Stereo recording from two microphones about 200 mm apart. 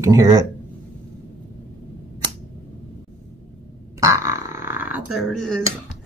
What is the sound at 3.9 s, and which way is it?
Burping, 15° right (ahead or behind).